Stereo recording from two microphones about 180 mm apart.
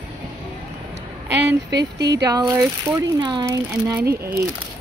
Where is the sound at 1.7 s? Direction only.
70° right (ahead or behind).